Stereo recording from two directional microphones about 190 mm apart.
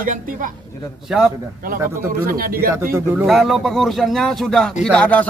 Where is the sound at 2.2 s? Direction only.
50° right (ahead or behind).